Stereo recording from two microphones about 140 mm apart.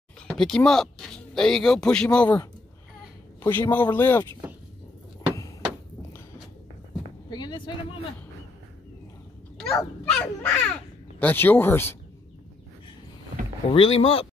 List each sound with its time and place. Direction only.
0.3 s speech: 5° left (ahead or behind)
3.4 s speech: 15° left (ahead or behind)
7.2 s speech: 30° left (ahead or behind)
9.8 s speech: 10° left (ahead or behind)
13.7 s speech: 45° left (ahead or behind)